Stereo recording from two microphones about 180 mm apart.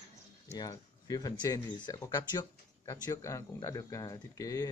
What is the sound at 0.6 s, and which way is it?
Speech, 20° left (ahead or behind).